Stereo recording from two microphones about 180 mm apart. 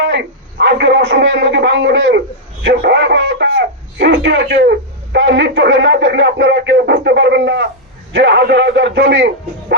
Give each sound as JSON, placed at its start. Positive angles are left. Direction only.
{"t": 0.0, "sound": "a man's voice", "side_deg": -75}
{"t": 2.6, "sound": "speech", "side_deg": -70}
{"t": 5.1, "sound": "speech", "side_deg": -80}